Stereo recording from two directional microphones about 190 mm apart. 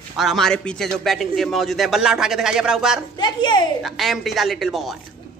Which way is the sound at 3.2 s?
25° left (ahead or behind).